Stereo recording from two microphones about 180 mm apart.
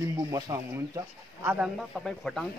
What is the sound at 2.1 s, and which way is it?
Speech, centre (ahead or behind).